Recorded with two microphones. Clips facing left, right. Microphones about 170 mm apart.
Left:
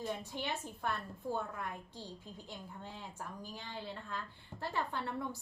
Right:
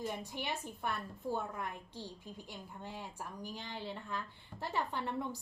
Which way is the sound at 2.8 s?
15° right (ahead or behind).